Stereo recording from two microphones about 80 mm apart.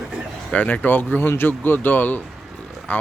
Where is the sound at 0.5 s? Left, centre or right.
Centre.